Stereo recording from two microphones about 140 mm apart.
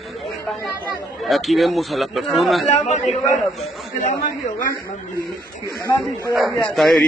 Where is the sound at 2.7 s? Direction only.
50° left (ahead or behind).